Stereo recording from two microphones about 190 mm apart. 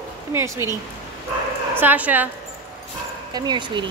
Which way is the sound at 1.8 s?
10° right (ahead or behind).